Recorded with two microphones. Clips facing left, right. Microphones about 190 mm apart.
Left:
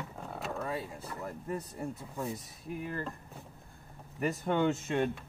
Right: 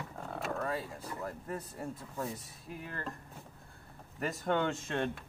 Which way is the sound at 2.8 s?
15° left (ahead or behind).